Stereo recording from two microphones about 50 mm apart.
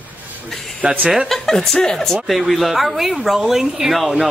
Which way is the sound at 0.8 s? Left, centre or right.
Right.